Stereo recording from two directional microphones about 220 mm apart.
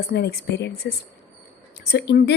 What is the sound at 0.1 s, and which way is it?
A woman's voice, 45° left (ahead or behind).